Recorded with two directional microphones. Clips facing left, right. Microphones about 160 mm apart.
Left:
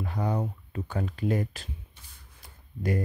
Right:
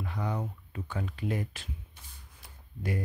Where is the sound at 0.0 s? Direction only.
40° left (ahead or behind).